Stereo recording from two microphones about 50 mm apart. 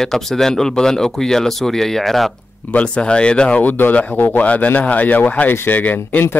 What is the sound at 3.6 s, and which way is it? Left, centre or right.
Speech, left.